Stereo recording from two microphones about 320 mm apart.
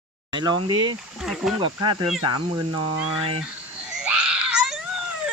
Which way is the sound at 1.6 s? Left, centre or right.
Centre.